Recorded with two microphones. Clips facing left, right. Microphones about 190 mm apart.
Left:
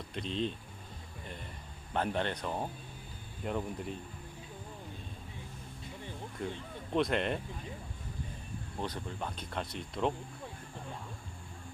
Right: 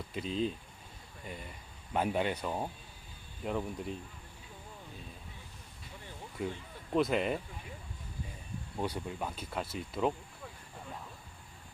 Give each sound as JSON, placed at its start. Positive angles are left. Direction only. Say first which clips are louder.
{"t": 0.1, "sound": "speech", "louder": "right 1 dB", "side_deg": -5}
{"t": 1.9, "sound": "speech", "louder": "right 2 dB", "side_deg": -10}
{"t": 6.4, "sound": "speech", "louder": "right 2 dB", "side_deg": -5}
{"t": 8.8, "sound": "speech", "louder": "right 2 dB", "side_deg": -10}